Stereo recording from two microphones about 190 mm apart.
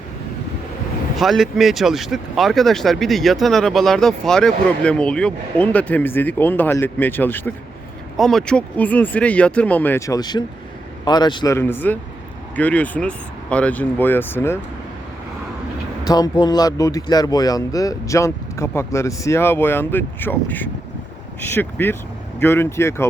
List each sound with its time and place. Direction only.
1.1 s a man's voice: centre (ahead or behind); by 11.5 s 25° left (ahead or behind)
11.5 s speech: 10° left (ahead or behind)
16.0 s speech: 20° left (ahead or behind)